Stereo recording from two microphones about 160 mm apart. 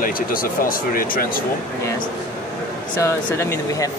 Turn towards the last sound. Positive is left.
turn(degrees=15)  # may be behind; listen again after turning